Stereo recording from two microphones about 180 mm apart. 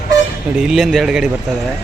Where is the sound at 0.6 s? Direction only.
Centre (ahead or behind).